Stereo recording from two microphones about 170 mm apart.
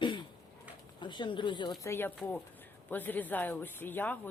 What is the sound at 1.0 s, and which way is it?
Speech, 25° left (ahead or behind).